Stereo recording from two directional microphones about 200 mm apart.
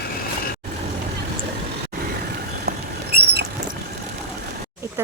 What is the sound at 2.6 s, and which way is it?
Rodents, 55° right (ahead or behind).